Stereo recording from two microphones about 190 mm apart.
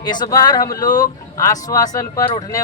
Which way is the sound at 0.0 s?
20° left (ahead or behind).